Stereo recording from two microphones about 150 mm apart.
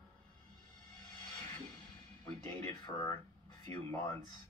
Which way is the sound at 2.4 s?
25° left (ahead or behind).